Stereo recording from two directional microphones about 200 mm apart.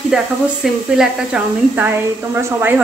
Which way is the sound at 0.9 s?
5° right (ahead or behind).